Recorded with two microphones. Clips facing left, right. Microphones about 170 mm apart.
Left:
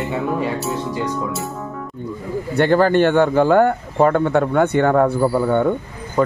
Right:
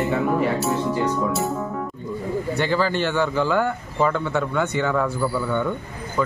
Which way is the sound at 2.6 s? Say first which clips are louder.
Left 10 dB; 55° left (ahead or behind).